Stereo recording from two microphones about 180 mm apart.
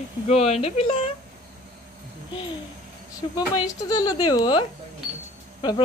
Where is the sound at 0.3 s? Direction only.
35° left (ahead or behind).